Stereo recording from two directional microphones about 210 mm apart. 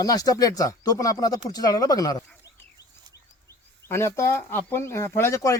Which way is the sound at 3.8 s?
10° left (ahead or behind).